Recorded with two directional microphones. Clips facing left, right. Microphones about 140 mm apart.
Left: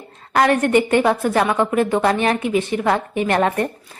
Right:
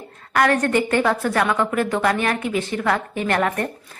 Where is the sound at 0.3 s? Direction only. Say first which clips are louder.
Left 3 dB; 20° left (ahead or behind).